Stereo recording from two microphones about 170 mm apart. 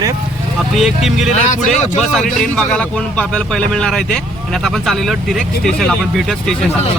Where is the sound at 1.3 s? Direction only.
45° left (ahead or behind).